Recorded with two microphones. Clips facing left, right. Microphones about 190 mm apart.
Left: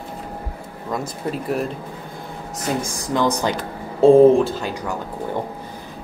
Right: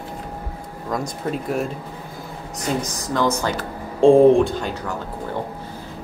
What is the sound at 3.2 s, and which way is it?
Speech, 15° left (ahead or behind).